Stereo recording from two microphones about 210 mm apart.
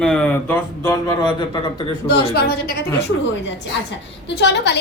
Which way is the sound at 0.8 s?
20° left (ahead or behind).